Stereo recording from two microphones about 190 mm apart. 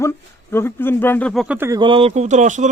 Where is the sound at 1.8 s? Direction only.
30° right (ahead or behind).